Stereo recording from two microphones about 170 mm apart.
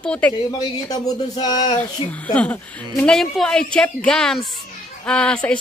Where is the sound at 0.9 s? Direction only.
25° left (ahead or behind).